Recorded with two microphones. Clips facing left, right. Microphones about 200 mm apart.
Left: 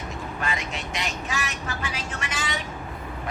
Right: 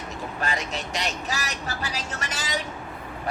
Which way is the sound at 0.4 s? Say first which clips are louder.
Right 2 dB; 35° right (ahead or behind).